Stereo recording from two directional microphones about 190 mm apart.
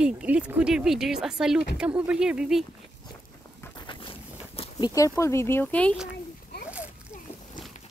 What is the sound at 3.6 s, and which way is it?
Boat, 25° left (ahead or behind).